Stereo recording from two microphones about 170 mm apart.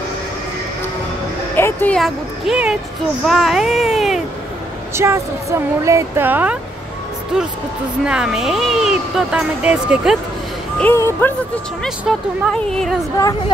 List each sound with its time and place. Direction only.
1.6 s music: 10° left (ahead or behind)
2.0 s speech: centre (ahead or behind)
4.9 s speech: 15° right (ahead or behind)
10.8 s speech: 10° left (ahead or behind)
12.1 s speech: centre (ahead or behind)